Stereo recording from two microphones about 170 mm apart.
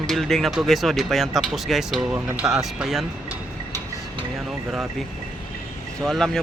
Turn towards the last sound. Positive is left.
turn(degrees=5)  # may be behind; listen again after turning